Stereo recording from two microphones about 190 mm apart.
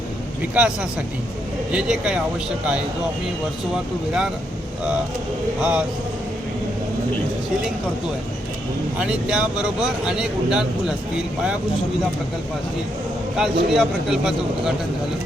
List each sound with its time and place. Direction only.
0.5 s speech: 5° right (ahead or behind)
5.5 s speech: 5° right (ahead or behind)
9.0 s speech: 5° right (ahead or behind)
13.3 s speech: centre (ahead or behind)